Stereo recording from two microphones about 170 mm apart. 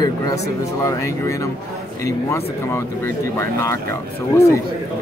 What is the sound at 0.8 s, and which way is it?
Speech, 20° left (ahead or behind).